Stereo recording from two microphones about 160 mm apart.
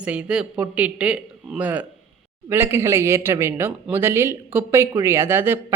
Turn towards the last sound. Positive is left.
turn(degrees=-15)  # may be behind; listen again after turning